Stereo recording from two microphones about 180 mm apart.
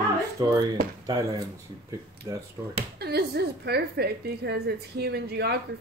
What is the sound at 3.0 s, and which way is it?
A woman's voice, 65° right (ahead or behind).